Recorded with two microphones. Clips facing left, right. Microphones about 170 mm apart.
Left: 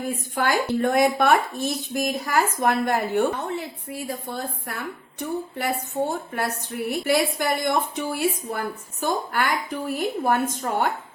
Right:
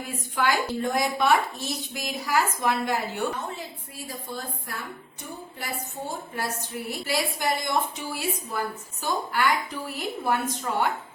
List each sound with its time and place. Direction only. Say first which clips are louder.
0.3 s a woman's voice: left 2 dB; 55° left (ahead or behind)